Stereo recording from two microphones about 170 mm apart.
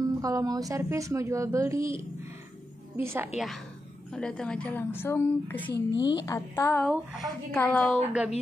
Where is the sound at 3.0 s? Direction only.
15° right (ahead or behind).